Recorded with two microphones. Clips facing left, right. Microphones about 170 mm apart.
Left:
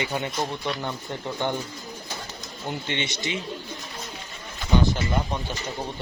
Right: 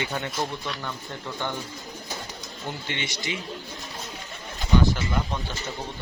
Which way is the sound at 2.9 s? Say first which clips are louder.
Left 3 dB; 20° left (ahead or behind).